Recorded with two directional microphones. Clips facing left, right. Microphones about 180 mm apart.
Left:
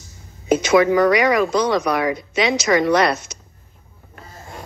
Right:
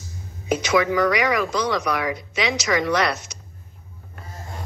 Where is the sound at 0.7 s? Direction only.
50° left (ahead or behind).